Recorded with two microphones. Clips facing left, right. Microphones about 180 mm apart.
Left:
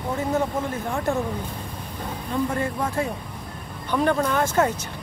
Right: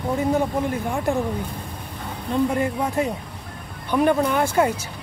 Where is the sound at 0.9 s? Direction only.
15° right (ahead or behind).